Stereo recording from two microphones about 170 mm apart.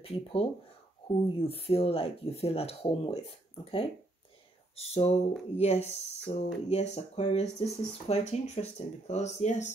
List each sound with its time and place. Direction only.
0.0 s speech: 35° left (ahead or behind)
4.7 s speech: 35° left (ahead or behind)